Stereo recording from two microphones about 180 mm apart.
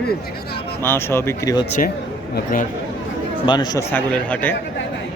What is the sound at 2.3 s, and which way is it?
Speech, 50° left (ahead or behind).